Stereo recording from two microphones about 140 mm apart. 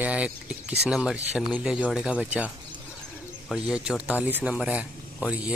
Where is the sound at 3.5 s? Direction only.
5° right (ahead or behind).